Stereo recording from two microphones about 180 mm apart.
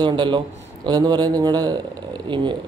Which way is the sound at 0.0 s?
25° right (ahead or behind).